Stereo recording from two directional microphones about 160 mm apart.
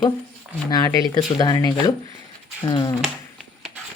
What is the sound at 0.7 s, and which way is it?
Speech, 20° left (ahead or behind).